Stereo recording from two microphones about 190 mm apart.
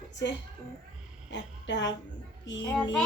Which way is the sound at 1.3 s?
70° left (ahead or behind).